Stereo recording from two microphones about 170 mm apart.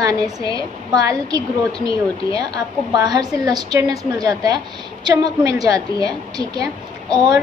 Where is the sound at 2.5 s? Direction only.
25° right (ahead or behind).